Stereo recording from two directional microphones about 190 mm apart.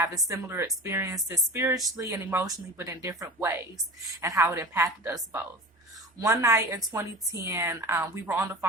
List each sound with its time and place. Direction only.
0.3 s speech: 15° right (ahead or behind)